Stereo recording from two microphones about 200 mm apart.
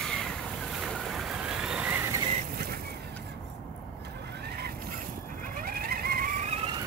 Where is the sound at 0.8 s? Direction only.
Centre (ahead or behind).